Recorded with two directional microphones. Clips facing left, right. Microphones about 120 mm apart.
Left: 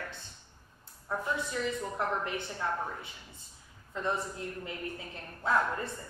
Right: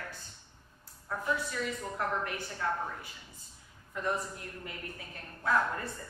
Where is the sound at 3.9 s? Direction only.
25° left (ahead or behind).